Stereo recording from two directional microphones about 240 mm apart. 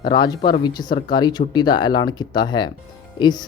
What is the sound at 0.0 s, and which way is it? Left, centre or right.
Speech, centre.